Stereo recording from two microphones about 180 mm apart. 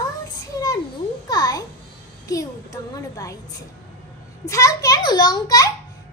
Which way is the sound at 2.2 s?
20° left (ahead or behind).